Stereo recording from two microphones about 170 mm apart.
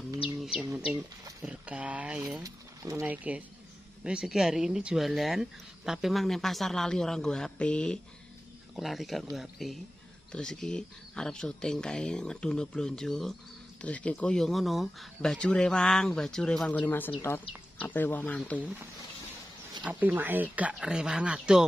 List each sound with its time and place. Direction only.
0.4 s bird: centre (ahead or behind)
1.4 s speech: 5° right (ahead or behind)
2.4 s speech: 20° right (ahead or behind); by 18.7 s 10° left (ahead or behind)
19.8 s speech: 10° right (ahead or behind)